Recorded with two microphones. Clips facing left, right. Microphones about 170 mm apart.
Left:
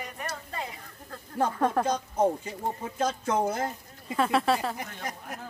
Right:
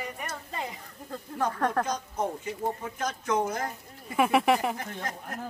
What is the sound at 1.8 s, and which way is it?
Speech, 30° left (ahead or behind).